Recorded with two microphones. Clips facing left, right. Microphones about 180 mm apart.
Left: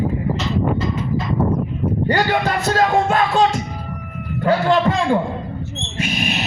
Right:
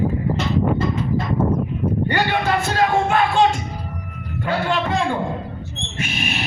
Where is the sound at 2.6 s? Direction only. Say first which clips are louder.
Left 2 dB; 40° left (ahead or behind).